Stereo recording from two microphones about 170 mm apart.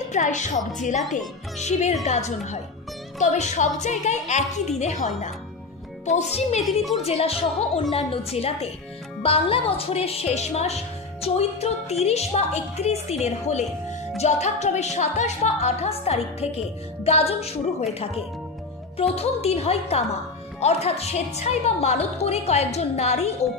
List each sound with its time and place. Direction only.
0.1 s a woman's voice: 45° left (ahead or behind)